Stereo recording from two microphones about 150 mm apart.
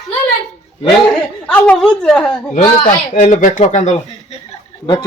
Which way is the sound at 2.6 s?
55° left (ahead or behind).